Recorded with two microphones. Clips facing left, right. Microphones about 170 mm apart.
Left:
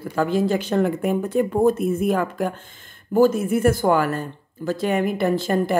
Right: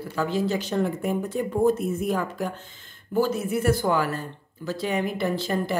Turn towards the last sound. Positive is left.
turn(degrees=50)  # may be behind; listen again after turning